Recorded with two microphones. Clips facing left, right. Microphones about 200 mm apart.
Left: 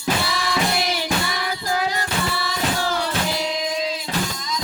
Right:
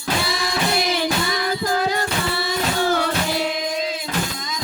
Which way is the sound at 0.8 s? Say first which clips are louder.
Right 4 dB; 50° right (ahead or behind).